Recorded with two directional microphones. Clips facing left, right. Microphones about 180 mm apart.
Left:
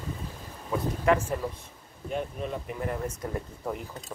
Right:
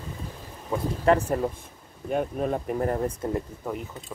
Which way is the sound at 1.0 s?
35° right (ahead or behind).